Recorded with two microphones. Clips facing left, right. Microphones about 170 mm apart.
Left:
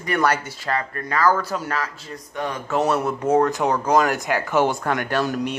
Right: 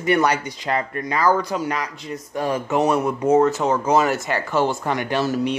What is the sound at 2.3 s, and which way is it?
Speech, 30° right (ahead or behind).